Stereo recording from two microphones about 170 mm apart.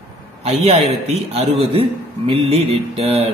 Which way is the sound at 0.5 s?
35° right (ahead or behind).